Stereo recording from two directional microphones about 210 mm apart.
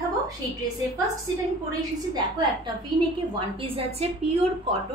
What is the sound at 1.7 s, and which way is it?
Speech, 20° right (ahead or behind).